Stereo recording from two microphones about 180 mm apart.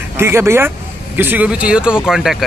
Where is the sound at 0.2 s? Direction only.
15° right (ahead or behind).